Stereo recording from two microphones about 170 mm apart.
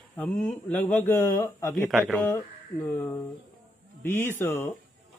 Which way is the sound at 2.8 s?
15° left (ahead or behind).